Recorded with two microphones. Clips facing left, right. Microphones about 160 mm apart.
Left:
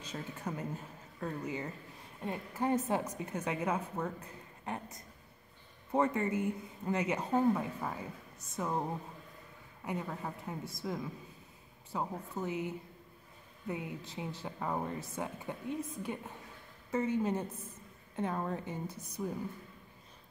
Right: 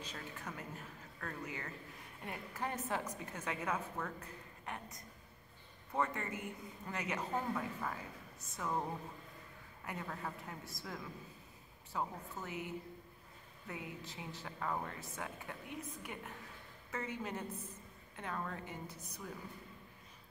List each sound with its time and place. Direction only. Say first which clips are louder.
0.1 s a woman's voice: left 7 dB; 25° left (ahead or behind)
5.9 s a woman's voice: left 8 dB; 25° left (ahead or behind)
9.8 s a woman's voice: left 5 dB; 15° left (ahead or behind)